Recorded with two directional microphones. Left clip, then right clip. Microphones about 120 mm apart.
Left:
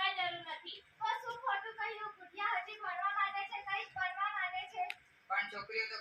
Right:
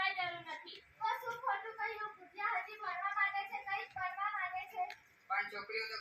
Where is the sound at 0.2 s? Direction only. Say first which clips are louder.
Left 2 dB; 15° left (ahead or behind).